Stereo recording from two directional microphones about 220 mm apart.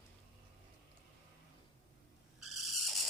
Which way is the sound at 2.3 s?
Centre (ahead or behind).